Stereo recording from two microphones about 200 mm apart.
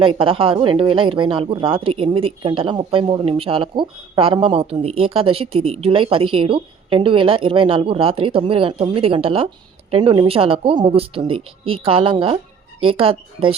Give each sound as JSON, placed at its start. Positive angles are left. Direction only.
{"t": 0.0, "sound": "speech", "side_deg": -25}